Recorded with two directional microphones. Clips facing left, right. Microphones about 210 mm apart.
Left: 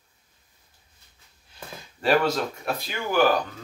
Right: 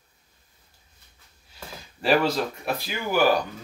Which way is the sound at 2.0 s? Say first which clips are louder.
Even; 5° right (ahead or behind).